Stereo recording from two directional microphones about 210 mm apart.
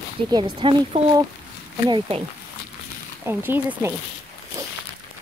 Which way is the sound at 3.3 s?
10° right (ahead or behind).